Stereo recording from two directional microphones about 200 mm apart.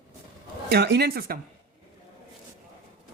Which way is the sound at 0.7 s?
55° right (ahead or behind).